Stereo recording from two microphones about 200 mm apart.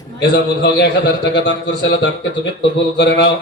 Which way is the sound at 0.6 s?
55° left (ahead or behind).